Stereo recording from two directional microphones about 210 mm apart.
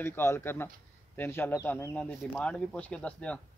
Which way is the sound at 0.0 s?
10° left (ahead or behind).